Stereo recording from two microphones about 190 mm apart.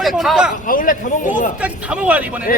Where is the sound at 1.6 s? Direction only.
5° right (ahead or behind).